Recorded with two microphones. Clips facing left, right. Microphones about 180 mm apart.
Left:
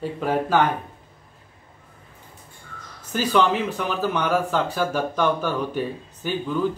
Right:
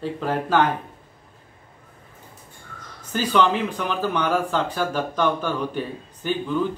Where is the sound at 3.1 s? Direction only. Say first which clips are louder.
Even; 5° left (ahead or behind).